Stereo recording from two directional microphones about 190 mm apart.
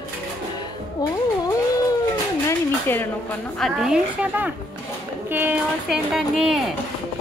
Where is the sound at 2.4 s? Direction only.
10° left (ahead or behind).